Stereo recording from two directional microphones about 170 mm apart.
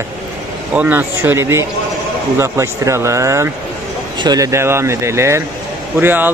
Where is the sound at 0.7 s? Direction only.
10° right (ahead or behind).